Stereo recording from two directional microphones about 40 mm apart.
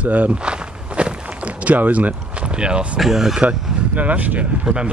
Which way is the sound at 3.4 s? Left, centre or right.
Right.